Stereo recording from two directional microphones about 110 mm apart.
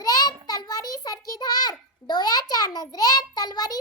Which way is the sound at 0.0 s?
35° left (ahead or behind).